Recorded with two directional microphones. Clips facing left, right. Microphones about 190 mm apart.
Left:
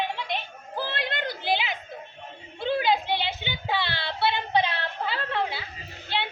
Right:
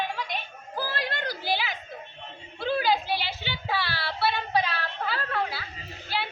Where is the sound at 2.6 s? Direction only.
20° left (ahead or behind).